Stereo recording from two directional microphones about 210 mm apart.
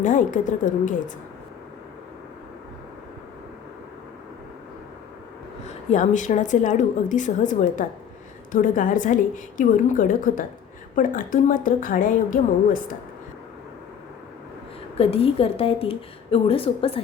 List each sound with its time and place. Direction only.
0.0 s a woman's voice: 35° left (ahead or behind)
5.6 s a woman's voice: 35° left (ahead or behind)
14.9 s a woman's voice: 25° left (ahead or behind)